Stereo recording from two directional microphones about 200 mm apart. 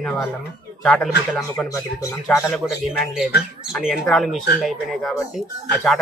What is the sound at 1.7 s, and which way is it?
Speech, 15° left (ahead or behind).